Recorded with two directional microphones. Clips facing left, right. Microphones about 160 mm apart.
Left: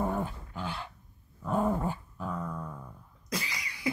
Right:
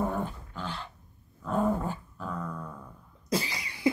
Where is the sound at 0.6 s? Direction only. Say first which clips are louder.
Even; 10° left (ahead or behind).